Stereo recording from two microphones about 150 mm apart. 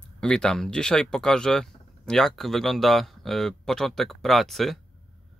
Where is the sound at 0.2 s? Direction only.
5° left (ahead or behind).